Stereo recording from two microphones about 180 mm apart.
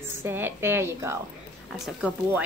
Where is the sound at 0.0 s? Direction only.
10° right (ahead or behind).